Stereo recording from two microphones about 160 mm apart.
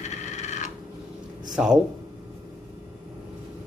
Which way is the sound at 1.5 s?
5° right (ahead or behind).